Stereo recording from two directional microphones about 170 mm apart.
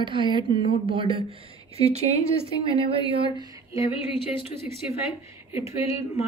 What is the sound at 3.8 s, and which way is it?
Speech, 30° left (ahead or behind).